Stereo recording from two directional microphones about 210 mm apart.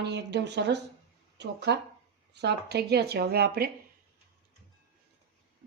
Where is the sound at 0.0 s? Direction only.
55° right (ahead or behind).